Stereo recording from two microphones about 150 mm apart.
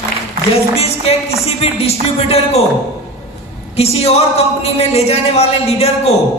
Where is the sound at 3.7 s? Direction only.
45° left (ahead or behind).